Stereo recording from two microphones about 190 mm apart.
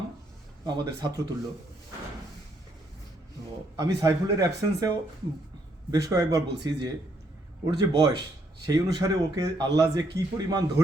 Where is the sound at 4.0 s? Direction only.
20° right (ahead or behind).